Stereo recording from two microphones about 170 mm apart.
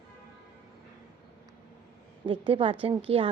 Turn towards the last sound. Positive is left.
turn(degrees=-35)  # may be behind; listen again after turning